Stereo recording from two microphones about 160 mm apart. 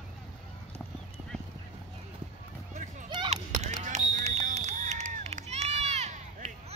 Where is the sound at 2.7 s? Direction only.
50° right (ahead or behind).